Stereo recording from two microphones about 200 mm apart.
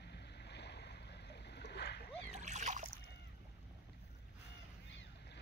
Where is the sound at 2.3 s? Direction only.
35° right (ahead or behind).